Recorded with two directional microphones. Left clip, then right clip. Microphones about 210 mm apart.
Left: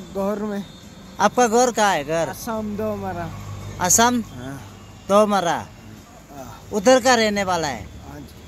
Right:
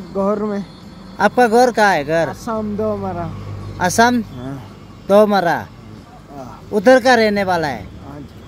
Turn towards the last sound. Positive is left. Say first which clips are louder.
# right 4 dB
turn(degrees=0)  # may be behind; listen again after turning